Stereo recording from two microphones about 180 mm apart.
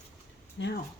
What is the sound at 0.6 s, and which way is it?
Speech, 90° left.